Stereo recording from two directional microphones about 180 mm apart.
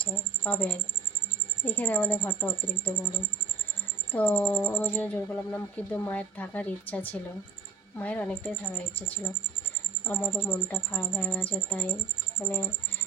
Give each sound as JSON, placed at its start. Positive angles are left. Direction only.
{"t": 0.0, "sound": "speech", "side_deg": 10}
{"t": 4.1, "sound": "speech", "side_deg": 10}